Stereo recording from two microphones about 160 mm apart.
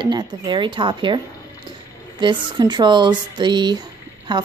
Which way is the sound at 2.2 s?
30° right (ahead or behind).